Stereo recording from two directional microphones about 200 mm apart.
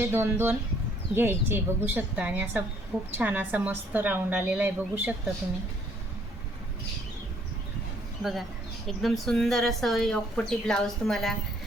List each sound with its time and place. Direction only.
0.0 s a woman's voice: 10° right (ahead or behind)
8.2 s speech: centre (ahead or behind)